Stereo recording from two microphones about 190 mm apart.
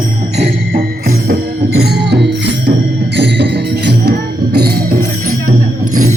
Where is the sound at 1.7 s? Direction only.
60° right (ahead or behind).